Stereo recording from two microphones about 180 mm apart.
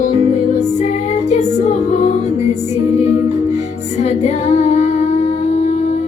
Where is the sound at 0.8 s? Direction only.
40° left (ahead or behind).